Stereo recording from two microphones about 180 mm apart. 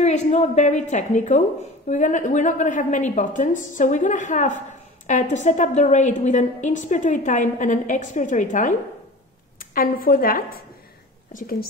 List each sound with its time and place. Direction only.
0.0 s a woman's voice: 40° left (ahead or behind)